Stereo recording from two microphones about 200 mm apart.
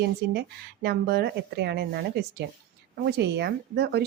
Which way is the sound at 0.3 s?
55° right (ahead or behind).